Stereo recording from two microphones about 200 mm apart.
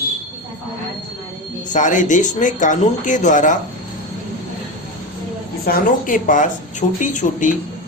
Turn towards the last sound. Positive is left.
turn(degrees=40)  # may be behind; listen again after turning